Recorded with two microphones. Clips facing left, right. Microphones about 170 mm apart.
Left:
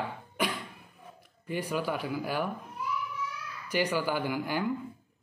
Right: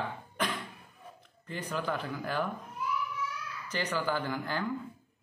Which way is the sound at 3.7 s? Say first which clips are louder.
Left 3 dB; 10° left (ahead or behind).